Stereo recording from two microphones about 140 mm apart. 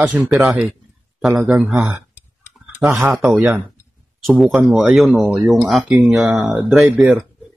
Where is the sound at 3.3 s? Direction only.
15° right (ahead or behind).